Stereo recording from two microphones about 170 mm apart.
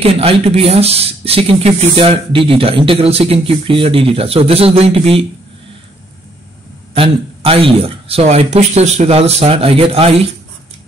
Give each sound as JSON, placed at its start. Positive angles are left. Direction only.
{"t": 0.0, "sound": "speech", "side_deg": -35}
{"t": 6.9, "sound": "speech", "side_deg": -35}